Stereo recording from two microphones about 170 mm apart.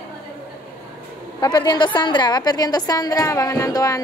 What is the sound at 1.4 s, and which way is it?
A woman's voice, 25° left (ahead or behind).